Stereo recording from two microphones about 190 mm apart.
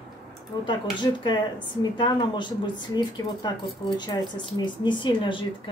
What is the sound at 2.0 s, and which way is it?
Speech, 25° left (ahead or behind).